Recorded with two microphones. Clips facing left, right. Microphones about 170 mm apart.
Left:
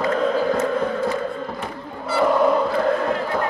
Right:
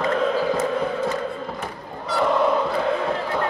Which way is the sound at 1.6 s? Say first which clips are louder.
Left 2 dB; 5° left (ahead or behind).